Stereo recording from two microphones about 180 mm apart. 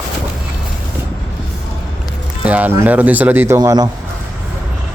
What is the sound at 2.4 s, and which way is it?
Speech, 10° right (ahead or behind).